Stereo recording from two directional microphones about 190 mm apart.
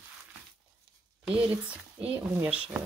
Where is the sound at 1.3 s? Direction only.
5° right (ahead or behind).